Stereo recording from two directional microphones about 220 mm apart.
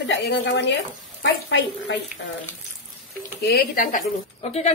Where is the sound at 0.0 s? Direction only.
55° left (ahead or behind).